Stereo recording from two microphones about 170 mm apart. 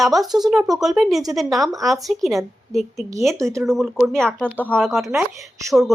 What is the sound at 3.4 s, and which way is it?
Speech, 15° right (ahead or behind).